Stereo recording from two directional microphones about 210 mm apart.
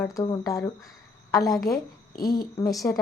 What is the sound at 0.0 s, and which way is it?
A woman's voice, 15° left (ahead or behind).